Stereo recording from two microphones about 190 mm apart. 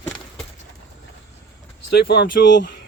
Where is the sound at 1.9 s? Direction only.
60° left (ahead or behind).